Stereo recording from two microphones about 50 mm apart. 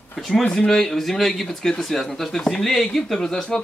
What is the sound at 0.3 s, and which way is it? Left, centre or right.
Speech, left.